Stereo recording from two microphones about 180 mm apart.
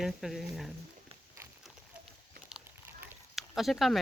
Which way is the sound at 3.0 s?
Centre (ahead or behind).